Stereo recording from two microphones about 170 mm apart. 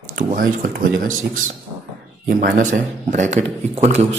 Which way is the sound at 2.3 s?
55° right (ahead or behind).